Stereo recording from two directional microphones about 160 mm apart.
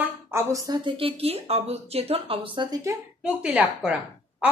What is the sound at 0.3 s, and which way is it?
Speech, 20° right (ahead or behind).